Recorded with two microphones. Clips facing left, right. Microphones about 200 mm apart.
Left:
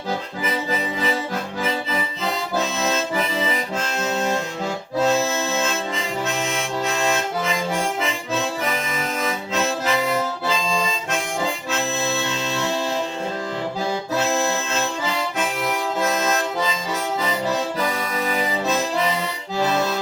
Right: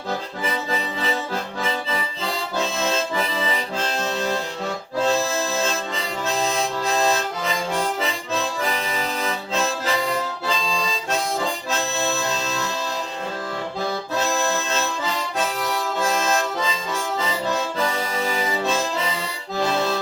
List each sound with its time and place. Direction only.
2.2 s accordion: 30° right (ahead or behind)
11.1 s accordion: 35° right (ahead or behind)
15.4 s accordion: 30° right (ahead or behind)